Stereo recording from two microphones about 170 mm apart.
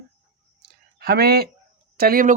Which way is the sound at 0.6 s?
65° right (ahead or behind).